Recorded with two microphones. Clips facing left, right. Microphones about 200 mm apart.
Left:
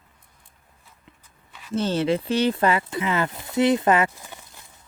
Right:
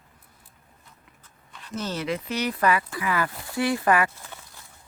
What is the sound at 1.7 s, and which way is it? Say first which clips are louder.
Speech: left 7 dB; 30° left (ahead or behind).